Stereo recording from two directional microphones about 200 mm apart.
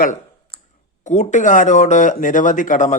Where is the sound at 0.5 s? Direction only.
30° left (ahead or behind).